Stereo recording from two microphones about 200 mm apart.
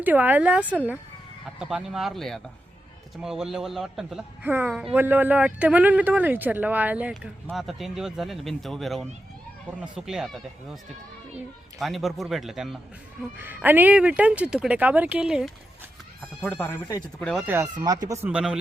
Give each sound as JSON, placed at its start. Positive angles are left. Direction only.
{"t": 0.0, "sound": "speech", "side_deg": -10}
{"t": 11.8, "sound": "speech", "side_deg": 0}
{"t": 16.4, "sound": "speech", "side_deg": 5}
{"t": 17.4, "sound": "speech", "side_deg": -10}
{"t": 18.3, "sound": "speech", "side_deg": -5}